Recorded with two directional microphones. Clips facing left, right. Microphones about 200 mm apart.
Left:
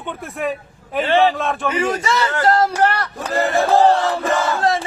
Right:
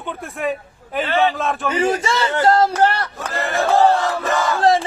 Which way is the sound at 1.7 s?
30° right (ahead or behind).